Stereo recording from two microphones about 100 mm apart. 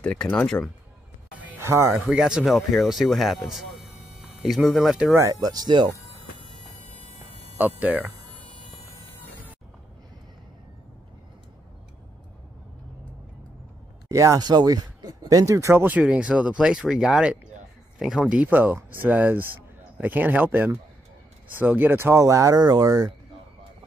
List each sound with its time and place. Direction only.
0.0 s speech: 10° left (ahead or behind)
1.6 s speech: 25° right (ahead or behind)
2.1 s speech: 5° right (ahead or behind)
5.4 s speech: 40° right (ahead or behind)
7.0 s a sound: 80° left
7.5 s speech: 15° right (ahead or behind)
14.0 s speech: 35° right (ahead or behind)
16.0 s speech: 10° right (ahead or behind); by 23.1 s 40° right (ahead or behind)